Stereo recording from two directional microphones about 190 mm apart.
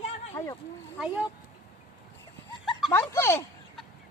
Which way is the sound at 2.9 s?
15° left (ahead or behind).